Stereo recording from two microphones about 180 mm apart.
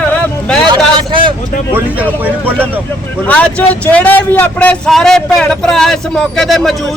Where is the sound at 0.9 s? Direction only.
30° right (ahead or behind).